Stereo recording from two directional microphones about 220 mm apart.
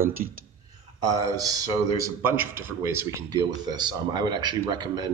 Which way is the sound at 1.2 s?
15° right (ahead or behind).